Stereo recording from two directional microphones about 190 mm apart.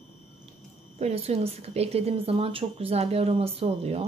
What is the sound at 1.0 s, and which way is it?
A woman's voice, 30° right (ahead or behind).